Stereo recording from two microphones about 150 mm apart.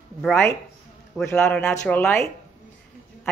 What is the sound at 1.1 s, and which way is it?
Speech, 10° left (ahead or behind).